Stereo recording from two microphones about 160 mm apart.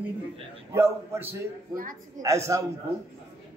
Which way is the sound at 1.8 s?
60° right (ahead or behind).